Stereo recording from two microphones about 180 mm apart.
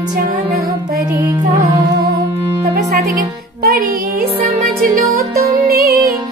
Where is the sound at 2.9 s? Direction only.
55° right (ahead or behind).